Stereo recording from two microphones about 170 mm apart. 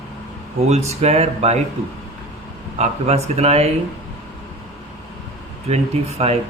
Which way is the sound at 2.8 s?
40° right (ahead or behind).